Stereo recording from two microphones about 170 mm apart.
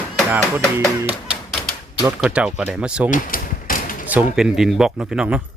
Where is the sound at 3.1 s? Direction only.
55° left (ahead or behind).